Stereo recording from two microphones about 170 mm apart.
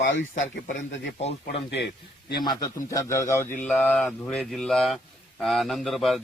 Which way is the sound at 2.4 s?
25° left (ahead or behind).